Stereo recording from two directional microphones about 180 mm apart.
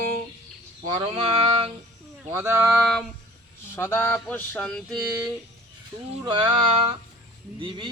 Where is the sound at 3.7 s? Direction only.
10° left (ahead or behind).